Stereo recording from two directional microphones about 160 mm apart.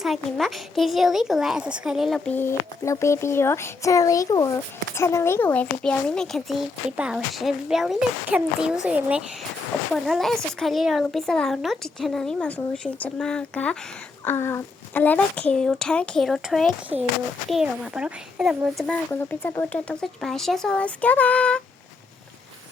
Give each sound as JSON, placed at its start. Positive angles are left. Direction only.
{"t": 0.0, "sound": "speech", "side_deg": 0}
{"t": 18.8, "sound": "speech", "side_deg": 10}